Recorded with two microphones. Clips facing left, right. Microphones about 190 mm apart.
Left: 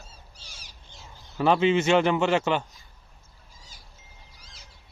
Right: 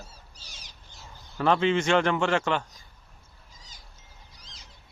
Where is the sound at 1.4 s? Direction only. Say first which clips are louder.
Left 2 dB; 10° left (ahead or behind).